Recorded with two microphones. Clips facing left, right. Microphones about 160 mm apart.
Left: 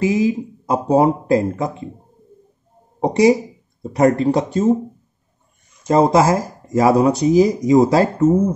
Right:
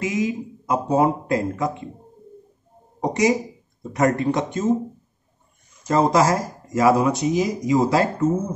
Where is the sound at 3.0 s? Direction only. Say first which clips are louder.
Left 6 dB; 30° left (ahead or behind).